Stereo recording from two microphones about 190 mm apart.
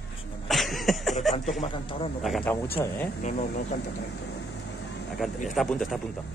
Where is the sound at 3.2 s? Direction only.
40° left (ahead or behind).